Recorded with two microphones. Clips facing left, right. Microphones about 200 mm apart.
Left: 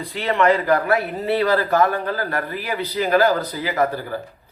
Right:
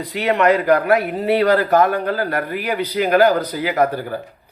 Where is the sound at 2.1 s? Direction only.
60° right (ahead or behind).